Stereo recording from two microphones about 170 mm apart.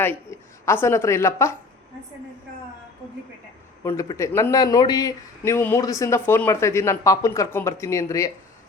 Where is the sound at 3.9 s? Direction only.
15° left (ahead or behind).